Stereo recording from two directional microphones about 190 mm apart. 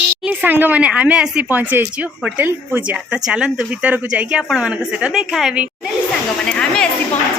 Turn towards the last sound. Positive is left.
turn(degrees=0)  # may be behind; listen again after turning